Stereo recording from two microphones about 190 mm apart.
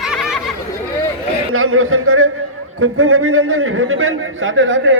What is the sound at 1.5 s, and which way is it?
A man's voice, 90° right.